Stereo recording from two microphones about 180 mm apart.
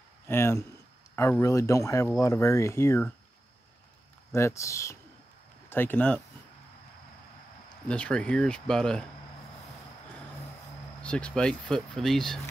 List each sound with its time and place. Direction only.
0.3 s speech: 15° left (ahead or behind)
4.3 s speech: 15° left (ahead or behind)
7.9 s speech: 5° left (ahead or behind)
11.0 s speech: 5° left (ahead or behind)